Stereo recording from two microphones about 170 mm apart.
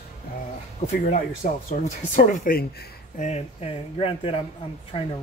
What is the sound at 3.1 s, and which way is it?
Speech, 40° left (ahead or behind).